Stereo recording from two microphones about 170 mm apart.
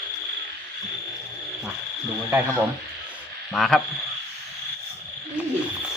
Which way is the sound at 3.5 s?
Centre (ahead or behind).